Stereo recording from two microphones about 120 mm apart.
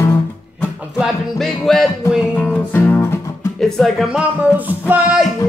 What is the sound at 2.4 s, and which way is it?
Music, 15° left (ahead or behind).